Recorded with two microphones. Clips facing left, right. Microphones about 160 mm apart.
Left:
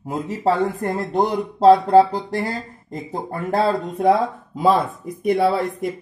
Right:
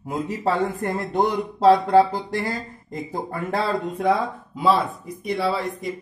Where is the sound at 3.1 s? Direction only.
30° left (ahead or behind).